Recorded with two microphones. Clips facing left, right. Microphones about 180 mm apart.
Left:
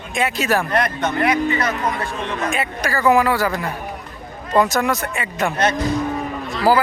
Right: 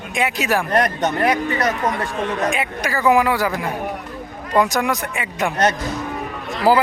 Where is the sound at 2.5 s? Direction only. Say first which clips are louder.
Even; 15° right (ahead or behind).